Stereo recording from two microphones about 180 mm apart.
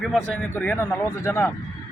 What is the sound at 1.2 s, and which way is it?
Speech, 15° left (ahead or behind).